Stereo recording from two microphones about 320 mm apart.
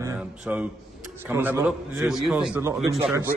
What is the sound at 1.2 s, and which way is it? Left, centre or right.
A man's voice, centre.